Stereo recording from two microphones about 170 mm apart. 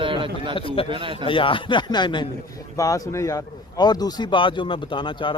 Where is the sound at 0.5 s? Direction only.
35° left (ahead or behind).